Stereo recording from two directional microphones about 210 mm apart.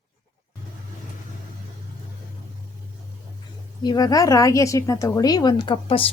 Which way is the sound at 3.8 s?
20° left (ahead or behind).